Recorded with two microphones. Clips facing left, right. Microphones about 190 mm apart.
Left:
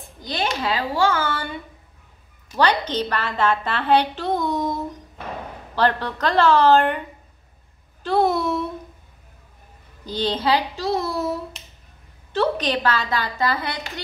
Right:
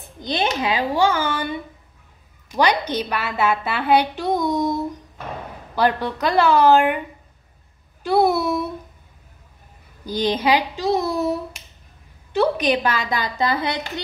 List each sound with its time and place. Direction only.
0.2 s a woman's voice: 20° right (ahead or behind)
5.8 s a woman's voice: 10° right (ahead or behind)
10.0 s a woman's voice: 10° right (ahead or behind)